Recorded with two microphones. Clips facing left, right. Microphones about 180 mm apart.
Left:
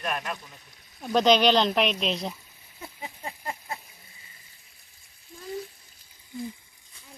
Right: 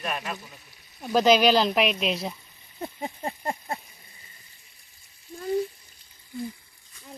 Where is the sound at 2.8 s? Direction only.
50° right (ahead or behind).